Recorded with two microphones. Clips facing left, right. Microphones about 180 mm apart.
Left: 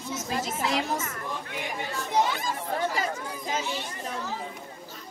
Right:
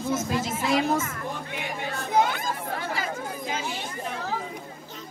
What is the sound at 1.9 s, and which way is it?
Chatter, 55° right (ahead or behind).